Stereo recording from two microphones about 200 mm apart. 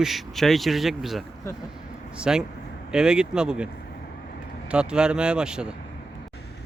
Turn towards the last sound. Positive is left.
turn(degrees=-5)  # may be behind; listen again after turning